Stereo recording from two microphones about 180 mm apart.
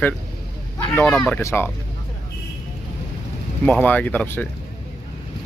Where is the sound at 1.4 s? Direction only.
15° left (ahead or behind).